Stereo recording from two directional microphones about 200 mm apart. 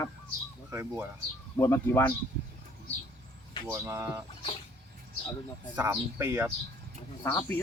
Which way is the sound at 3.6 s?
15° right (ahead or behind).